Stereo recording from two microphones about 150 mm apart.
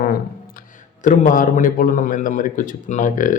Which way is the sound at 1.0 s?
65° left (ahead or behind).